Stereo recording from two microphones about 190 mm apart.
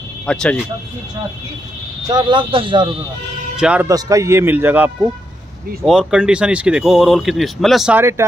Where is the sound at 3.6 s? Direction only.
5° right (ahead or behind).